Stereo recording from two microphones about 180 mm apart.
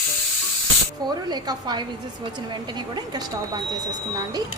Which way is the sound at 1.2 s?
25° right (ahead or behind).